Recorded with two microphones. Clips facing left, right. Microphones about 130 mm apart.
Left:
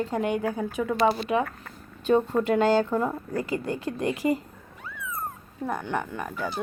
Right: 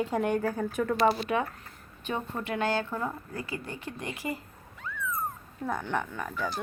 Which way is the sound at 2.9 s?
15° left (ahead or behind).